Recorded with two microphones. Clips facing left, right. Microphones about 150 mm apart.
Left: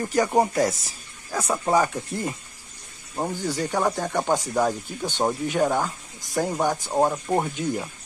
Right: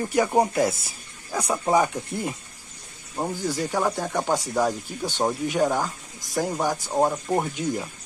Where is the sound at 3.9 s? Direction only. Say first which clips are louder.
Left 1 dB; 5° right (ahead or behind).